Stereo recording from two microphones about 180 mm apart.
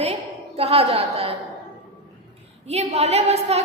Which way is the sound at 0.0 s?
35° right (ahead or behind).